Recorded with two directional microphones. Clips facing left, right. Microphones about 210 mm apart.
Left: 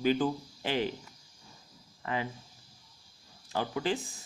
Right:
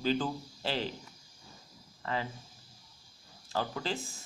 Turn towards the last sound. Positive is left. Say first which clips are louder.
# left 5 dB
turn(degrees=15)  # may be behind; listen again after turning